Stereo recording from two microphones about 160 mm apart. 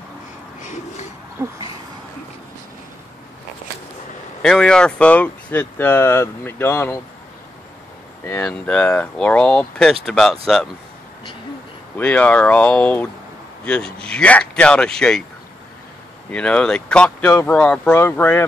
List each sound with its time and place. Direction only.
0.6 s wheeze: 50° left (ahead or behind)
1.4 s a sound: 15° right (ahead or behind)
4.4 s speech: 5° left (ahead or behind)
8.4 s speech: 5° left (ahead or behind)
12.0 s speech: 10° left (ahead or behind)
16.3 s speech: 5° left (ahead or behind)